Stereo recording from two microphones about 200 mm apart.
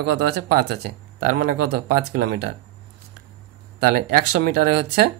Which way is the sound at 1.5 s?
50° right (ahead or behind).